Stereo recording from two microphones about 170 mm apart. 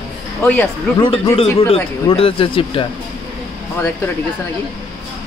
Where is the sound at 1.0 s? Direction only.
30° left (ahead or behind).